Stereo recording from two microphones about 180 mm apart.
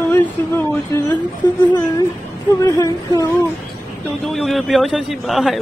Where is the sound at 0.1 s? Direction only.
15° left (ahead or behind).